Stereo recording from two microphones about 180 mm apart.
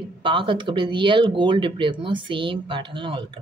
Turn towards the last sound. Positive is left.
turn(degrees=-30)  # may be behind; listen again after turning